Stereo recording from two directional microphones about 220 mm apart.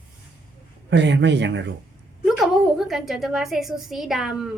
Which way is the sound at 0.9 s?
55° right (ahead or behind).